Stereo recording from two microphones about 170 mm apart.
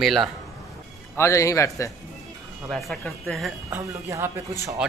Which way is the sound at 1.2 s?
15° left (ahead or behind).